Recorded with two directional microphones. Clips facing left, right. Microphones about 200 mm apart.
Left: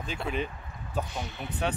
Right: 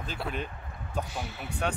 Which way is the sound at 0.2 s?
Centre (ahead or behind).